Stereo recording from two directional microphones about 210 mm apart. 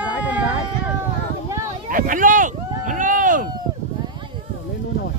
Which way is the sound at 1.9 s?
40° right (ahead or behind).